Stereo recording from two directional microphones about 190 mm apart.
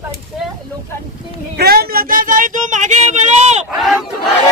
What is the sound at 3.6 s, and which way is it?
Speech, 5° right (ahead or behind).